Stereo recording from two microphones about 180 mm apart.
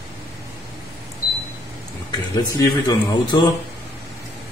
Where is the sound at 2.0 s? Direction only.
20° left (ahead or behind).